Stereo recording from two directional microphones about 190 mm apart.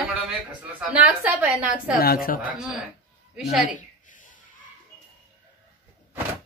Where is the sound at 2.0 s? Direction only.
50° left (ahead or behind).